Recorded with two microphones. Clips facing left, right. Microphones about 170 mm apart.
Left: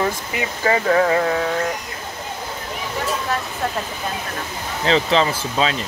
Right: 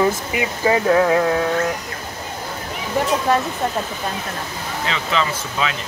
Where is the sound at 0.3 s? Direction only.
5° right (ahead or behind).